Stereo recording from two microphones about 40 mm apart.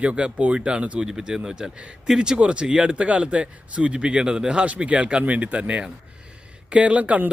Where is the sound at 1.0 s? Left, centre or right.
Centre.